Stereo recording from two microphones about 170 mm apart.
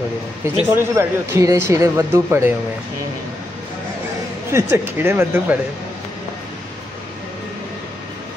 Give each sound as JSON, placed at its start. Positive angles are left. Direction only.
{"t": 0.7, "sound": "speech", "side_deg": -15}
{"t": 4.5, "sound": "speech", "side_deg": -15}